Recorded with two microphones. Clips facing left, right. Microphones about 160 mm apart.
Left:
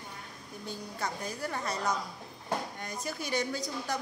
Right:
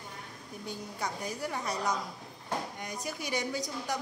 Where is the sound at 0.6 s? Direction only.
15° right (ahead or behind).